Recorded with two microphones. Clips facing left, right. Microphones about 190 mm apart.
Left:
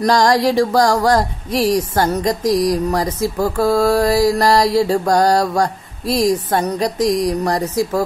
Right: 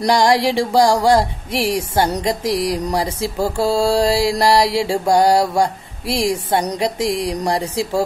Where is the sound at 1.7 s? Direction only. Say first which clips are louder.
Even; 10° right (ahead or behind).